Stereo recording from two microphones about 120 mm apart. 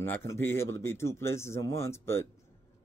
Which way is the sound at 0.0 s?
20° left (ahead or behind).